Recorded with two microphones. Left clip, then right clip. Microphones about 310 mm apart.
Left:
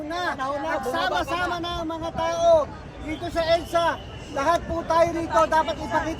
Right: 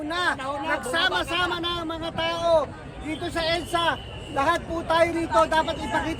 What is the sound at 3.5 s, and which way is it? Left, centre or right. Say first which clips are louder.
Speech: left 4 dB; centre.